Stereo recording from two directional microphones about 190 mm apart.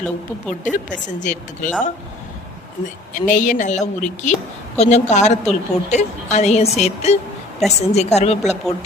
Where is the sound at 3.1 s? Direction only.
40° left (ahead or behind).